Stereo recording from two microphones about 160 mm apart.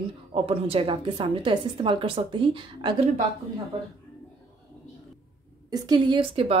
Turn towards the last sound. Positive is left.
turn(degrees=-35)  # may be behind; listen again after turning